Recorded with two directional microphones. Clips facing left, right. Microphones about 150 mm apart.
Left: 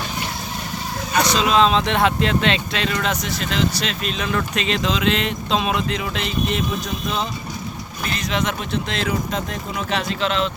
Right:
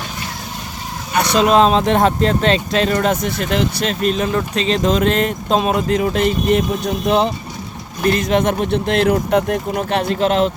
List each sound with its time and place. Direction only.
1.1 s speech: 55° right (ahead or behind)
4.3 s speech: 30° right (ahead or behind)
4.9 s speech: 50° right (ahead or behind)
8.0 s speech: 50° right (ahead or behind)